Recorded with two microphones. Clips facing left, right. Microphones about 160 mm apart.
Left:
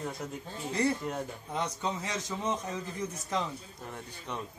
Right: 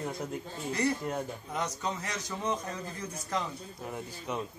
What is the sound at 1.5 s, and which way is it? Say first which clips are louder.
A man's voice: left 2 dB; 25° left (ahead or behind).